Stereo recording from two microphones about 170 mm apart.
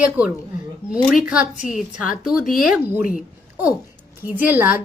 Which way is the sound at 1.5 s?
50° left (ahead or behind).